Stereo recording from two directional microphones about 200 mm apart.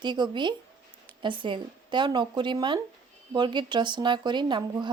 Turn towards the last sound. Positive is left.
turn(degrees=-20)  # may be behind; listen again after turning